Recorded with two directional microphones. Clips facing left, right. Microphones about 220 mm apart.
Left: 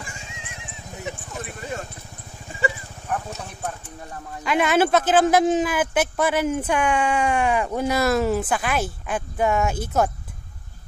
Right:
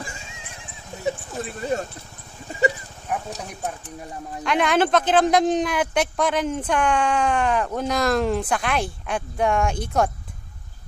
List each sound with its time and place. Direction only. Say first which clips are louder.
1.0 s a sound: right 7 dB; 35° right (ahead or behind)
3.1 s clip-clop: even; 10° right (ahead or behind)
3.4 s speech: right 1 dB; 15° right (ahead or behind)
4.4 s speech: left 1 dB; 5° left (ahead or behind)